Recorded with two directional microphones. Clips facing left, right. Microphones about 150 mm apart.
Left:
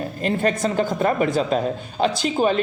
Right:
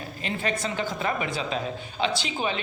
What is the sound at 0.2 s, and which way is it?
A woman's voice, 45° left (ahead or behind).